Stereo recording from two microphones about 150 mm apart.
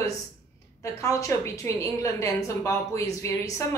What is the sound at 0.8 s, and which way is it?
A woman's voice, 20° left (ahead or behind).